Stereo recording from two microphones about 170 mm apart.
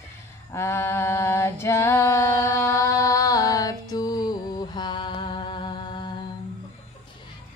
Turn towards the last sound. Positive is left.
turn(degrees=25)  # may be behind; listen again after turning